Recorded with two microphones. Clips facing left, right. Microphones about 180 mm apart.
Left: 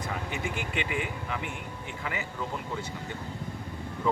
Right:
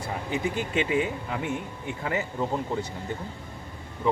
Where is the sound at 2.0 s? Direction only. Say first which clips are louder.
Right 7 dB; 40° right (ahead or behind).